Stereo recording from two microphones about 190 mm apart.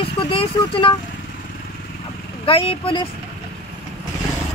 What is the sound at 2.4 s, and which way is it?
Speech, 30° left (ahead or behind).